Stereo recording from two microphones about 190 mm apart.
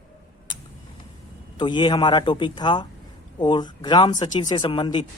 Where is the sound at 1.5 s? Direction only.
25° left (ahead or behind).